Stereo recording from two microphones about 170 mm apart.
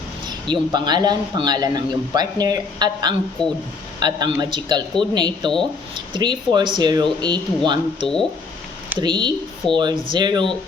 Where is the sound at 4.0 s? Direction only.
25° right (ahead or behind).